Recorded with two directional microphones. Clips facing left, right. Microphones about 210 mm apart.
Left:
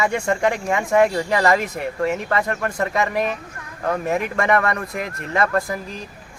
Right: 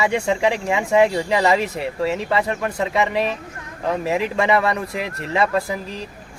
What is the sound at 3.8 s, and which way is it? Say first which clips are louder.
Speech: right 1 dB; centre (ahead or behind).